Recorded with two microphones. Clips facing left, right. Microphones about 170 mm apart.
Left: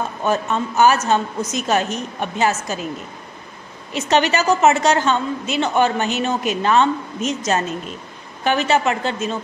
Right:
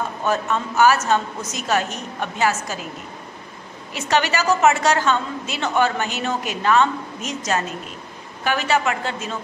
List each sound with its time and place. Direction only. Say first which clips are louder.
0.2 s a woman's voice: left 2 dB; 20° left (ahead or behind)
3.9 s a woman's voice: left 3 dB; 20° left (ahead or behind)